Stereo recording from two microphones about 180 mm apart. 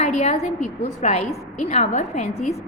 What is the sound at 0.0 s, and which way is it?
A woman's voice, 35° left (ahead or behind).